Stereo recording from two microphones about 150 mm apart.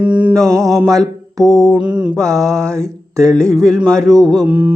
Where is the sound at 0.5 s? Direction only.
20° right (ahead or behind).